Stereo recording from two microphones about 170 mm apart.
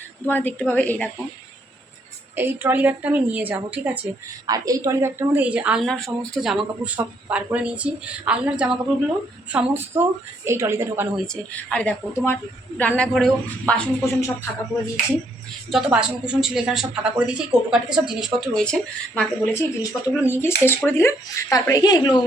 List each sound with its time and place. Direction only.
0.3 s a woman's voice: 10° left (ahead or behind)
2.3 s a woman's voice: 10° right (ahead or behind)
4.4 s a woman's voice: 20° right (ahead or behind)
11.5 s a woman's voice: 5° left (ahead or behind)
15.7 s a woman's voice: 5° right (ahead or behind); by 22.2 s 25° left (ahead or behind)